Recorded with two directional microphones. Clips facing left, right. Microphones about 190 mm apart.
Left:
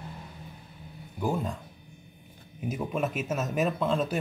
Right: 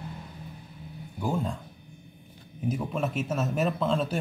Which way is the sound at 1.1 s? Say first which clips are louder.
Even; 5° left (ahead or behind).